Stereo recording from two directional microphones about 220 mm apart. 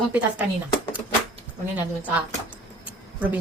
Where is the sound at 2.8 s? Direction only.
5° right (ahead or behind).